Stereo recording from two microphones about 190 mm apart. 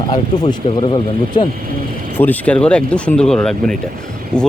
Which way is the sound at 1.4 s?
25° left (ahead or behind).